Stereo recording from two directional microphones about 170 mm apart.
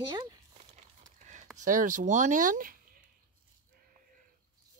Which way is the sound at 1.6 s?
50° right (ahead or behind).